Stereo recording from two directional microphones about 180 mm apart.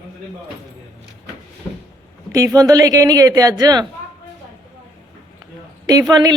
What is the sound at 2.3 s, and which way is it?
Speech, 20° right (ahead or behind).